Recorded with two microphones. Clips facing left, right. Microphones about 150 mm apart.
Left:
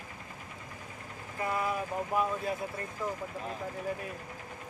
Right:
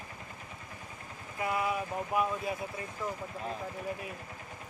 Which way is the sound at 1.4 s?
5° right (ahead or behind).